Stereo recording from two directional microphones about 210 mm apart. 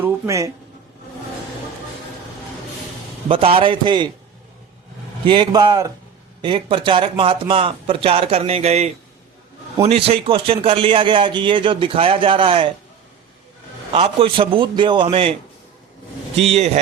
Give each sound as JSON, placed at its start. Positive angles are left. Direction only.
{"t": 0.0, "sound": "speech", "side_deg": -15}
{"t": 3.2, "sound": "a man's voice", "side_deg": -25}
{"t": 5.2, "sound": "a man's voice", "side_deg": -20}
{"t": 13.9, "sound": "a man's voice", "side_deg": -25}